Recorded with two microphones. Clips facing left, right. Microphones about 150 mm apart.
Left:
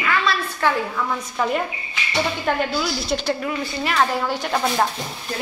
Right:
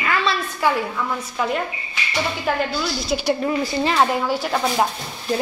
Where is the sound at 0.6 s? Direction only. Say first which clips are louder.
Right 1 dB; 10° right (ahead or behind).